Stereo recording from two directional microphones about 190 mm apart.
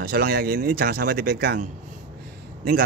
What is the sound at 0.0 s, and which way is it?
Speech, 55° right (ahead or behind).